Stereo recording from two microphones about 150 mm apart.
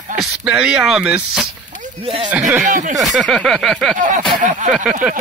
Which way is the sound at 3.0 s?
Centre (ahead or behind).